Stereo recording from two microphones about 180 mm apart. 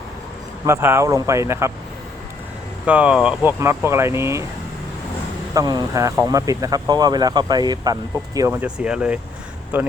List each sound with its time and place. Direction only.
0.6 s speech: 15° right (ahead or behind)
2.8 s speech: 5° right (ahead or behind)
5.5 s speech: 20° right (ahead or behind)
8.4 s speech: 10° right (ahead or behind)